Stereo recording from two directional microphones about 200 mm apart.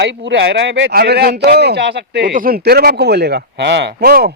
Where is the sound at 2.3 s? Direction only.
45° right (ahead or behind).